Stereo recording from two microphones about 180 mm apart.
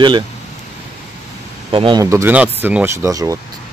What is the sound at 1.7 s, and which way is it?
Speech, 25° right (ahead or behind).